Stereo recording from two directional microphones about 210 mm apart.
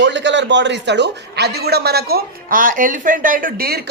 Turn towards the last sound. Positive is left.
turn(degrees=-45)  # may be behind; listen again after turning